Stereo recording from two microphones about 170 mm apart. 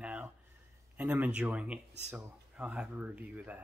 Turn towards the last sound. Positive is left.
turn(degrees=-5)  # may be behind; listen again after turning